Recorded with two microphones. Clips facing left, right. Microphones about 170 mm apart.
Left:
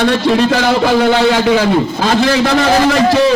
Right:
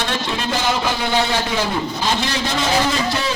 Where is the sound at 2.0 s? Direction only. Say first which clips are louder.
Left 11 dB; 65° left (ahead or behind).